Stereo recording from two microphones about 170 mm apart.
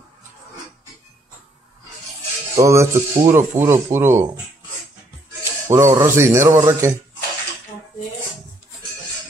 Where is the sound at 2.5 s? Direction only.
20° right (ahead or behind).